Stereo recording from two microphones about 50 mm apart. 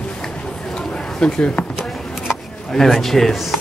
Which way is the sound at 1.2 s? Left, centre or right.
Left.